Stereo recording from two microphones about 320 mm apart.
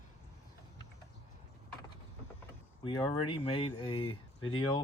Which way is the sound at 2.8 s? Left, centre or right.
Centre.